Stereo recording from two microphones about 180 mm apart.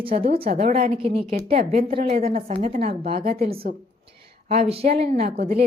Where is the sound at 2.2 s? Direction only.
55° right (ahead or behind).